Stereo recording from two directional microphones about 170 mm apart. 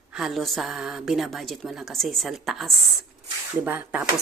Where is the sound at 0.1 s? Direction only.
Centre (ahead or behind).